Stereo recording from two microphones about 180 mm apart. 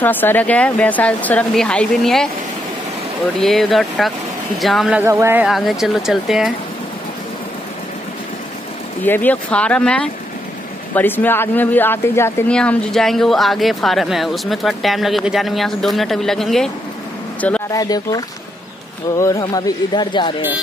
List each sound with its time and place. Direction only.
0.0 s speech: 10° left (ahead or behind)
3.3 s speech: centre (ahead or behind)
5.0 s a man's voice: 15° right (ahead or behind)
5.5 s speech: centre (ahead or behind)
9.0 s speech: 10° left (ahead or behind)
17.4 s a sound: 5° left (ahead or behind)
17.7 s speech: 20° left (ahead or behind)